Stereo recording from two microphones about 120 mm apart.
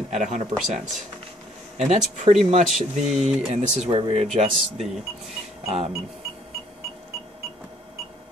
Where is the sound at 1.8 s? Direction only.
80° right.